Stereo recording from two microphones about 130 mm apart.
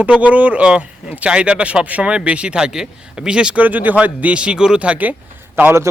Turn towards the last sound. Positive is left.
turn(degrees=-15)  # may be behind; listen again after turning